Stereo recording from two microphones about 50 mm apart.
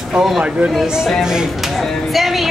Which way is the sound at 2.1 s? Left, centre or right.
Centre.